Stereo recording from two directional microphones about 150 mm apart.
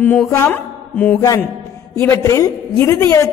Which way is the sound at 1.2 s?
20° left (ahead or behind).